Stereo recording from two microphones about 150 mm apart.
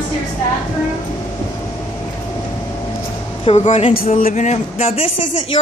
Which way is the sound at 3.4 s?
50° left (ahead or behind).